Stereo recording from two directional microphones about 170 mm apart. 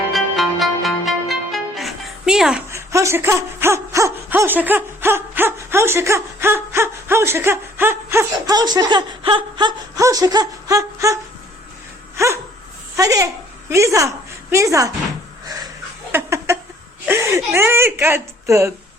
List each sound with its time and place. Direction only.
0.1 s music: centre (ahead or behind)
2.6 s speech: 15° right (ahead or behind)
12.1 s dog: 15° right (ahead or behind)
13.0 s speech: 20° right (ahead or behind)
16.1 s a sound: 15° right (ahead or behind)
17.1 s speech: 15° right (ahead or behind)